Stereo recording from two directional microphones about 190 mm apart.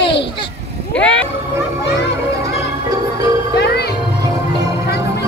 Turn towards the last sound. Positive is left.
turn(degrees=60)  # may be behind; listen again after turning